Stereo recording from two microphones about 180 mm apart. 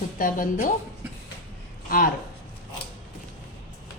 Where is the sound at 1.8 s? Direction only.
50° left (ahead or behind).